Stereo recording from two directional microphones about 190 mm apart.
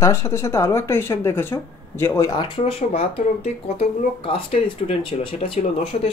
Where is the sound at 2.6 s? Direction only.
35° left (ahead or behind).